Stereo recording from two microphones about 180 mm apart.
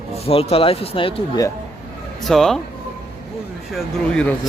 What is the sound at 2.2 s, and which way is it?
Speech, centre (ahead or behind).